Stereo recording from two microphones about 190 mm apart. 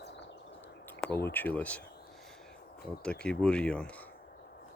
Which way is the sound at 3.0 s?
5° left (ahead or behind).